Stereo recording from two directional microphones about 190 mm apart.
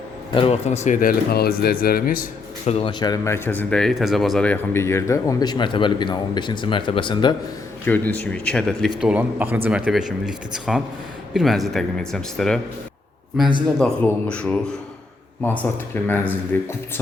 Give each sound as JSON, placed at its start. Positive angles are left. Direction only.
{"t": 0.3, "sound": "speech", "side_deg": 30}
{"t": 1.3, "sound": "speech", "side_deg": 55}
{"t": 2.6, "sound": "speech", "side_deg": 30}
{"t": 7.9, "sound": "a man's voice", "side_deg": 10}
{"t": 16.5, "sound": "speech", "side_deg": 10}